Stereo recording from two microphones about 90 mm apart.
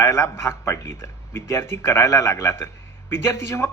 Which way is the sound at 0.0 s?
30° left (ahead or behind).